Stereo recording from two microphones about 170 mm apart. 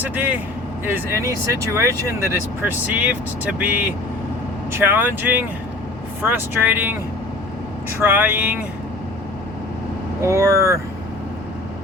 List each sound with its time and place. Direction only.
0.0 s speech: 10° right (ahead or behind)
8.0 s speech: 10° right (ahead or behind)
10.2 s speech: 15° right (ahead or behind)